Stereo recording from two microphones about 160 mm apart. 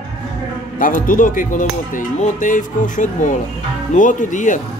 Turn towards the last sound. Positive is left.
turn(degrees=55)  # may be behind; listen again after turning